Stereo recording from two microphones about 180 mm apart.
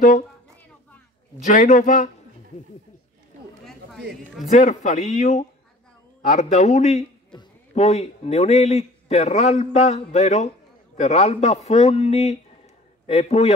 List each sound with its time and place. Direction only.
1.4 s speech: 45° left (ahead or behind)
4.5 s a man's voice: 40° left (ahead or behind)